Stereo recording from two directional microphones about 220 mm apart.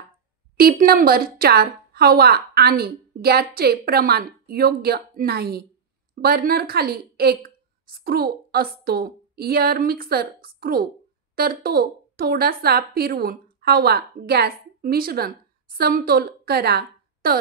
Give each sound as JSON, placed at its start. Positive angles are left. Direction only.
{"t": 0.6, "sound": "a woman's voice", "side_deg": -40}